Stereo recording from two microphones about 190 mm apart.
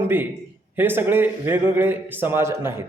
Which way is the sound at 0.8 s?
10° right (ahead or behind).